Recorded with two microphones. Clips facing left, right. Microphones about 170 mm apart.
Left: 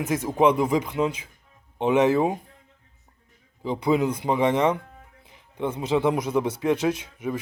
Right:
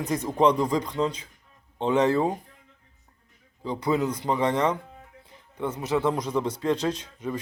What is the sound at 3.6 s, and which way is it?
Speech, 15° left (ahead or behind).